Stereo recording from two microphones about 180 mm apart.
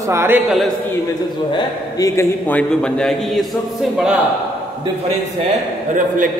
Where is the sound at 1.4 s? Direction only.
25° left (ahead or behind); by 4.1 s centre (ahead or behind).